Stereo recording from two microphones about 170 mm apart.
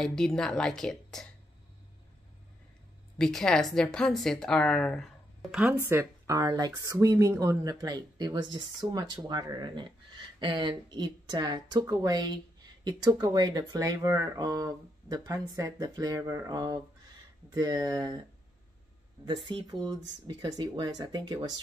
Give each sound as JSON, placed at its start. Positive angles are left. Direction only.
{"t": 0.0, "sound": "speech", "side_deg": 5}
{"t": 3.2, "sound": "a woman's voice", "side_deg": 5}
{"t": 19.2, "sound": "a woman's voice", "side_deg": -25}